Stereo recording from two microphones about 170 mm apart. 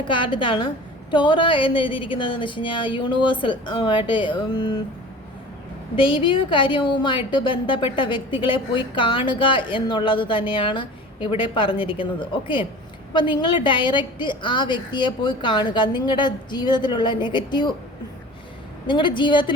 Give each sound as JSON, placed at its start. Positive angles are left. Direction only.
{"t": 0.1, "sound": "a woman's voice", "side_deg": 30}
{"t": 6.0, "sound": "a woman's voice", "side_deg": 30}
{"t": 18.9, "sound": "a woman's voice", "side_deg": 30}